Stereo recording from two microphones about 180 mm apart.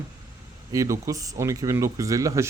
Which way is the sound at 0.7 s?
20° right (ahead or behind).